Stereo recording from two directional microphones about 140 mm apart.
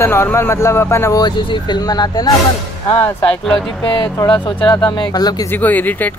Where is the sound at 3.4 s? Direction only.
Centre (ahead or behind).